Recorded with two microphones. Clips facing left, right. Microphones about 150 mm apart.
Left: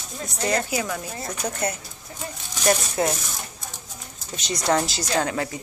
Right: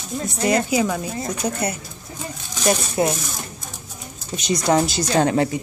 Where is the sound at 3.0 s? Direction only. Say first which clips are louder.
Right 6 dB; 25° right (ahead or behind).